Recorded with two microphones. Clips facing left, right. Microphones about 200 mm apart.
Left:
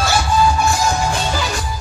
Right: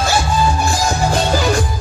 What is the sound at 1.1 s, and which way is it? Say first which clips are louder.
Music: right 5 dB; 50° right (ahead or behind).